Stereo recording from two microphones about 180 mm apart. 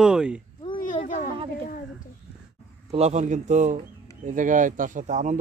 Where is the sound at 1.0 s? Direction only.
45° left (ahead or behind).